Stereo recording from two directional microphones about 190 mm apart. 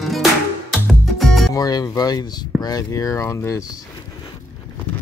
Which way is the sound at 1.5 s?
20° left (ahead or behind).